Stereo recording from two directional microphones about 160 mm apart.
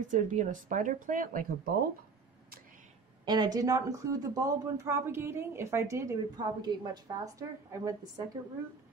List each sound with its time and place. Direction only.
0.0 s speech: 50° right (ahead or behind)
3.3 s speech: 25° right (ahead or behind)